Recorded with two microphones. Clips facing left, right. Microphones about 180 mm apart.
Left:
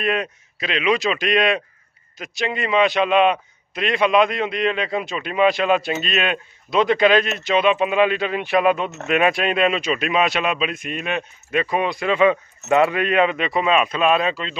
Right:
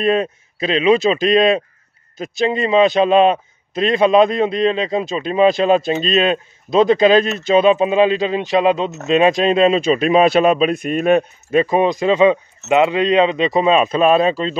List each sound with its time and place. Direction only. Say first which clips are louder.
0.0 s a man's voice: right 6 dB; 30° right (ahead or behind)
12.2 s a man's voice: right 4 dB; 20° right (ahead or behind); by 14.6 s 40° right (ahead or behind)